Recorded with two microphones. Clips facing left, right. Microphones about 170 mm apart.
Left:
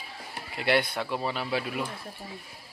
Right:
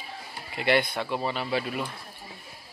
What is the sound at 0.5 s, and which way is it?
A man's voice, 5° left (ahead or behind).